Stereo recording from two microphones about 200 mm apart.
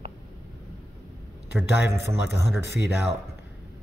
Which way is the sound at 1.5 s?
10° right (ahead or behind).